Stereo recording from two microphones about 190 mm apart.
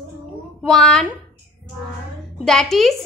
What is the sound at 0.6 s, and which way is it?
Speech, centre (ahead or behind).